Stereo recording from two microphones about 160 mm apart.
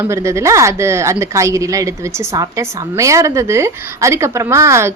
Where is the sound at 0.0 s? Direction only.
20° right (ahead or behind).